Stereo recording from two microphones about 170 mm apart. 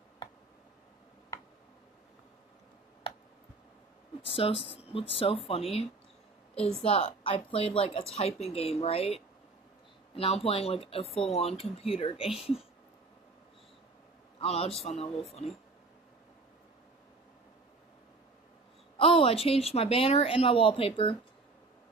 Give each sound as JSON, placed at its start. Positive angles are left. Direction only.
{"t": 4.2, "sound": "a woman's voice", "side_deg": 35}
{"t": 14.4, "sound": "a woman's voice", "side_deg": 35}
{"t": 18.9, "sound": "a woman's voice", "side_deg": 35}